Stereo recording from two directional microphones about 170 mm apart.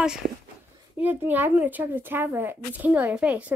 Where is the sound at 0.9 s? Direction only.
10° right (ahead or behind).